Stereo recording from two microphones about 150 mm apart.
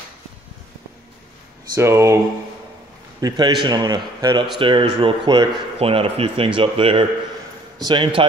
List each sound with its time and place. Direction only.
1.8 s a man's voice: 20° right (ahead or behind)
3.2 s a man's voice: 25° right (ahead or behind)